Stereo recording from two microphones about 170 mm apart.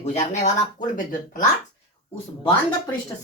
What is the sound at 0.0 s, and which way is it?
Speech, 40° left (ahead or behind).